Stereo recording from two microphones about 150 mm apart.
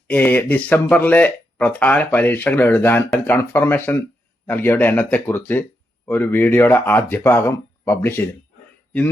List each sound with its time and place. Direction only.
0.1 s speech: 10° left (ahead or behind)